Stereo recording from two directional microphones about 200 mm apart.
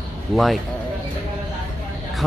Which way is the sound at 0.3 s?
Centre (ahead or behind).